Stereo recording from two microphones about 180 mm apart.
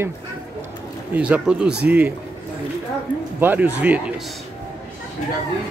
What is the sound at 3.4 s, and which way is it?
Speech, 10° right (ahead or behind).